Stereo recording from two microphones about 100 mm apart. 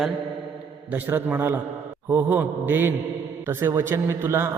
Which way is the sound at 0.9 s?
15° right (ahead or behind).